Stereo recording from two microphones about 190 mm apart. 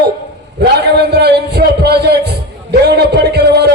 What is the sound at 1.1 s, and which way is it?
A man's voice, 60° right (ahead or behind).